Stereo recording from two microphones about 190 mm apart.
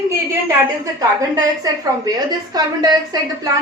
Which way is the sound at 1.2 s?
20° right (ahead or behind).